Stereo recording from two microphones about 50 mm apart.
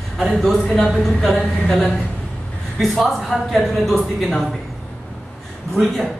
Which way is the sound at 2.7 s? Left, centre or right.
Centre.